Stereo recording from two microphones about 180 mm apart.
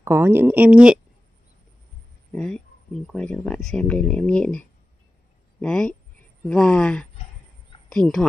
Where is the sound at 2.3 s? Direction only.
5° left (ahead or behind).